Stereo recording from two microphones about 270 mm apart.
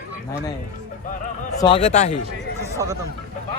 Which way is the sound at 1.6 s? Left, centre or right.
Left.